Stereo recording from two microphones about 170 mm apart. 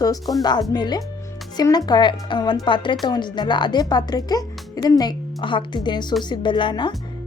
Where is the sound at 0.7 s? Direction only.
25° left (ahead or behind).